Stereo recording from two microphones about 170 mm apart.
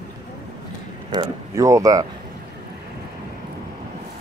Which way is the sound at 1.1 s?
20° right (ahead or behind).